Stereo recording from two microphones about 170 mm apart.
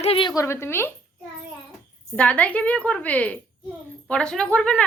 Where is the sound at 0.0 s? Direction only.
30° left (ahead or behind).